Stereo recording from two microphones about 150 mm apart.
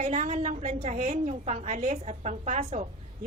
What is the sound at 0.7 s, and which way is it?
Speech, 40° right (ahead or behind).